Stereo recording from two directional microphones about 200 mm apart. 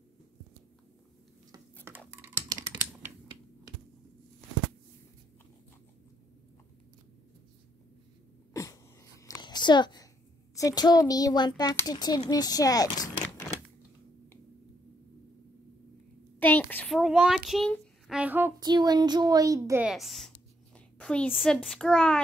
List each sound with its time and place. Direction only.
1.9 s a sound: 10° right (ahead or behind)
9.2 s a sound: 20° left (ahead or behind)
10.5 s speech: 20° left (ahead or behind)
16.3 s a child's voice: 10° left (ahead or behind); by 18.5 s 10° right (ahead or behind)
18.6 s a child's voice: 20° right (ahead or behind)
19.9 s speech: centre (ahead or behind)